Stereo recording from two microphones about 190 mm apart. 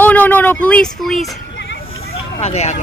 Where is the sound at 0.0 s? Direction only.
10° left (ahead or behind).